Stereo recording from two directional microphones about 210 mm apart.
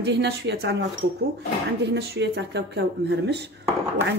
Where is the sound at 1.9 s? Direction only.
55° right (ahead or behind).